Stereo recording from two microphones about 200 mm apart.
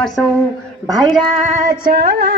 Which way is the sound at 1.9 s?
50° right (ahead or behind).